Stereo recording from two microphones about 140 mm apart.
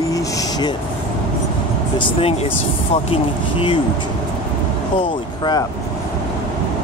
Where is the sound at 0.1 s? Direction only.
30° left (ahead or behind).